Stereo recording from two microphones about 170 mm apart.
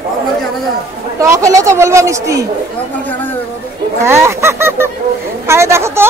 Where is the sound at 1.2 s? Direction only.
20° right (ahead or behind).